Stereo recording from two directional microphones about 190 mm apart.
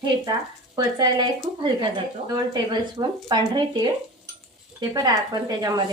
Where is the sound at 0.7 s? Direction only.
25° right (ahead or behind).